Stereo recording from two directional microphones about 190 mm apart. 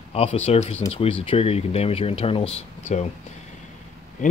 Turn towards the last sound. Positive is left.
turn(degrees=40)  # may be behind; listen again after turning